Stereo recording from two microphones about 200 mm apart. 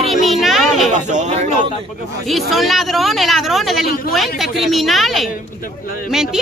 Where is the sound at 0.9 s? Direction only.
35° right (ahead or behind).